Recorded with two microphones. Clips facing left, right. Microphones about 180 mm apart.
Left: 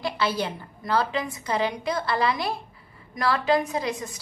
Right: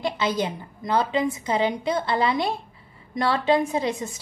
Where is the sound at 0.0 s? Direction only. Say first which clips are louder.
Right 2 dB; 20° right (ahead or behind).